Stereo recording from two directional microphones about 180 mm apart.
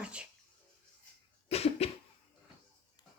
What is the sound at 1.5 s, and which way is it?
Cough, 35° left (ahead or behind).